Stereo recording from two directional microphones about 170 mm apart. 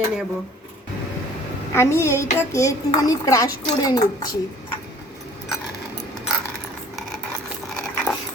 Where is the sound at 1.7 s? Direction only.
15° left (ahead or behind).